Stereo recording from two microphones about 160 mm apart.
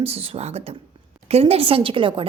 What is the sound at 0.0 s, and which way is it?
A woman's voice, 40° right (ahead or behind).